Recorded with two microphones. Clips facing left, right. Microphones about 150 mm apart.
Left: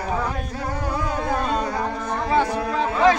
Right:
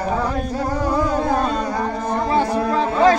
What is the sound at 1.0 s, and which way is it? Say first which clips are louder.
Music: right 5 dB; 40° right (ahead or behind).